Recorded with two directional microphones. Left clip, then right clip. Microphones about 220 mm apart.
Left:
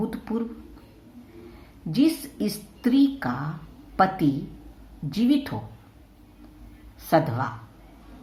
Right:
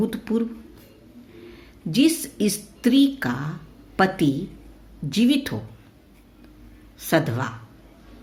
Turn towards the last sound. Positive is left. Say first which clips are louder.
# even
turn(degrees=-35)  # may be behind; listen again after turning